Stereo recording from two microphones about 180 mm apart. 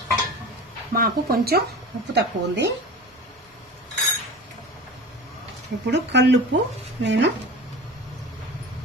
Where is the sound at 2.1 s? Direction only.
70° right (ahead or behind).